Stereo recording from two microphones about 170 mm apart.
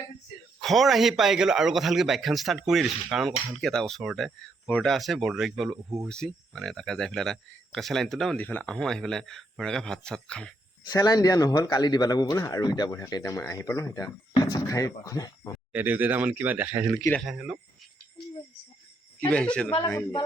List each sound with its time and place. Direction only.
0.6 s speech: centre (ahead or behind)
10.9 s speech: 20° left (ahead or behind)
15.7 s speech: 10° right (ahead or behind)
17.0 s speech: 10° left (ahead or behind)
17.2 s speech: 5° right (ahead or behind)
19.2 s speech: 5° left (ahead or behind)